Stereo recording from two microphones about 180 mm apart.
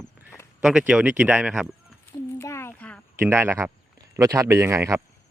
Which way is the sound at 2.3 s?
15° left (ahead or behind).